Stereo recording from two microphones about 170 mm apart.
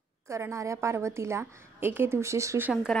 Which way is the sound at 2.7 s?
Centre (ahead or behind).